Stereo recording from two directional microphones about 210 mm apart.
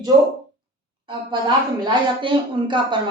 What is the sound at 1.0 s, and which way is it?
A woman's voice, 20° right (ahead or behind).